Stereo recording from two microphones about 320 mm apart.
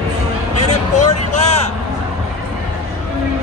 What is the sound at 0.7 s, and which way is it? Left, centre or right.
Vehicle, left.